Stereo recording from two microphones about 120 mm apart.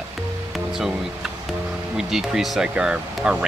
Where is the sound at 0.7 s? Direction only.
5° right (ahead or behind).